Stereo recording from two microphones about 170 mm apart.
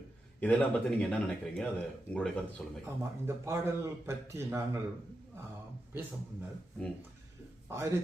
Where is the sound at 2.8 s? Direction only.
15° right (ahead or behind).